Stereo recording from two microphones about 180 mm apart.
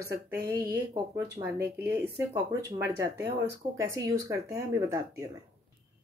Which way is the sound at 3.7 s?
15° right (ahead or behind).